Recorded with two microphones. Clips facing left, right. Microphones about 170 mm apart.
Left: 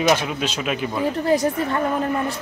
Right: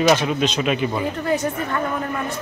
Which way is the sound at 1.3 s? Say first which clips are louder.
Left 3 dB; 30° left (ahead or behind).